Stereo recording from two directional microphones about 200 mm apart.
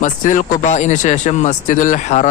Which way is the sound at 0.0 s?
40° left (ahead or behind).